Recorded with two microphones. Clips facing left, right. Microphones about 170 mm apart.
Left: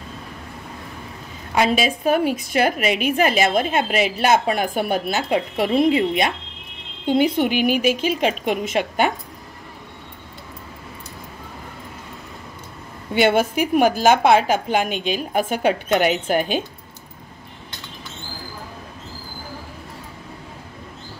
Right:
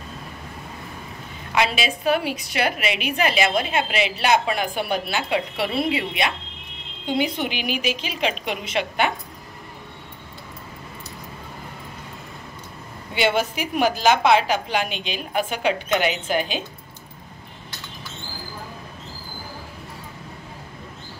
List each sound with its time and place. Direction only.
1.5 s a woman's voice: 45° left (ahead or behind)
13.1 s a woman's voice: 50° left (ahead or behind)